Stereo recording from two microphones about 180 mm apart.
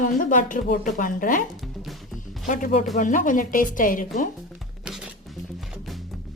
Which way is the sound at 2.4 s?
45° left (ahead or behind).